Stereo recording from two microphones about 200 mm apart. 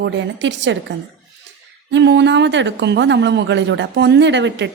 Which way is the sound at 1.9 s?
60° right (ahead or behind).